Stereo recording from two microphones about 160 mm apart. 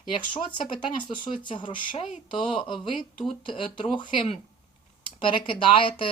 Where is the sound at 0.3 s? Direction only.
30° left (ahead or behind).